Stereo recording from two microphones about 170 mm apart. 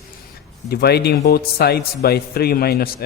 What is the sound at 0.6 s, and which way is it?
Speech, 70° left (ahead or behind).